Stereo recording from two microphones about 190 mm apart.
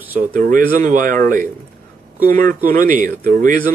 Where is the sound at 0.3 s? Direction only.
45° right (ahead or behind).